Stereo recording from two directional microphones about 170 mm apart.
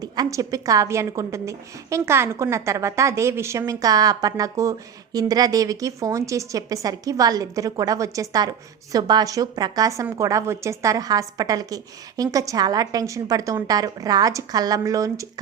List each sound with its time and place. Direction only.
0.0 s a woman's voice: 20° right (ahead or behind)